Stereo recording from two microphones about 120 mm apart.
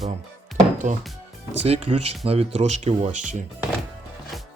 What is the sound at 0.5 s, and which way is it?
Music, 90° right.